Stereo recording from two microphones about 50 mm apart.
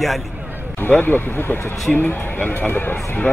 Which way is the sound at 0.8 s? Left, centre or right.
Left.